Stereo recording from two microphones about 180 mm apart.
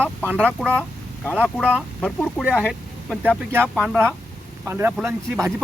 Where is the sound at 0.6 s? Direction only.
5° left (ahead or behind).